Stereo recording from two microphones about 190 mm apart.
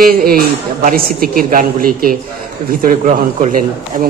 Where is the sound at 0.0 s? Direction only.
50° right (ahead or behind).